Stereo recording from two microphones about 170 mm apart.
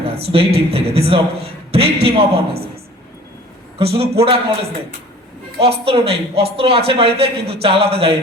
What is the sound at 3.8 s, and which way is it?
Speech, 35° right (ahead or behind).